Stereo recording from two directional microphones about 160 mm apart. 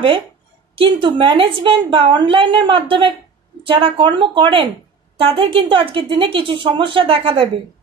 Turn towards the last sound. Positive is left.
turn(degrees=-35)  # may be behind; listen again after turning